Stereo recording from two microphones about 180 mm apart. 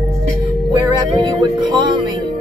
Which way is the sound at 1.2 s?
25° right (ahead or behind).